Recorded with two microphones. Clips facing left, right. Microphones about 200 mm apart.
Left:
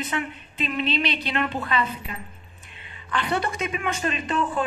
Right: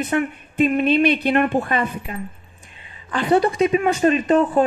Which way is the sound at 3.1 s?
40° right (ahead or behind).